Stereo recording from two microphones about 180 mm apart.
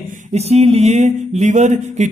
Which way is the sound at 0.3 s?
35° right (ahead or behind).